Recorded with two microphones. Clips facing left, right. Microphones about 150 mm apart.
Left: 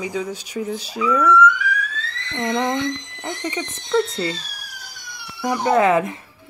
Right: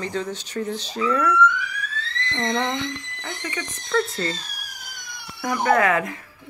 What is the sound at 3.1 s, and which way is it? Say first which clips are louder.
Speech: left 5 dB; 25° left (ahead or behind).